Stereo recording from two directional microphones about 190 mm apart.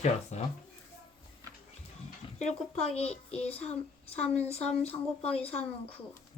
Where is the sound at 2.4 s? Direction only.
35° left (ahead or behind).